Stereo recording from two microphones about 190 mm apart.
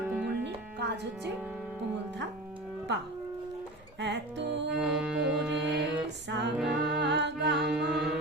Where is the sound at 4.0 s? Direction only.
65° right (ahead or behind).